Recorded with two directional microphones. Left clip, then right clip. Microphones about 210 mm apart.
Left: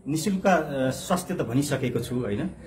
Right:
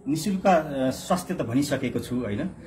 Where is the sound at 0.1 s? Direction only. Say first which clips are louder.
Right 1 dB; 20° left (ahead or behind).